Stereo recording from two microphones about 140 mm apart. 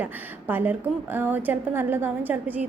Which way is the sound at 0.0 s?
15° right (ahead or behind).